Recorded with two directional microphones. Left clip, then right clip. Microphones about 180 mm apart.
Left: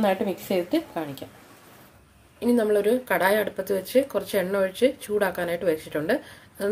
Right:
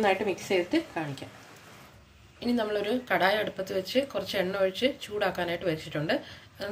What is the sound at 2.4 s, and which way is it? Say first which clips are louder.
Speech: left 7 dB; 50° left (ahead or behind).